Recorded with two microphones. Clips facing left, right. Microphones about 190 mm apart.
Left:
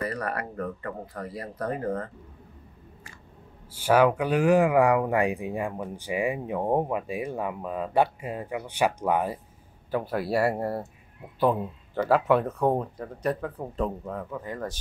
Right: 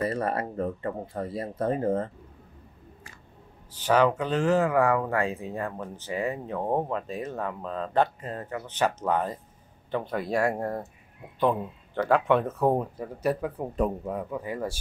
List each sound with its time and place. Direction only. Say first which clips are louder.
0.0 s speech: right 3 dB; 25° right (ahead or behind)
3.7 s speech: left 2 dB; 10° left (ahead or behind); by 14.8 s 10° right (ahead or behind)